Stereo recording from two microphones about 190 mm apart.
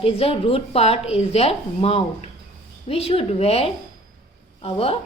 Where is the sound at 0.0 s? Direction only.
30° left (ahead or behind).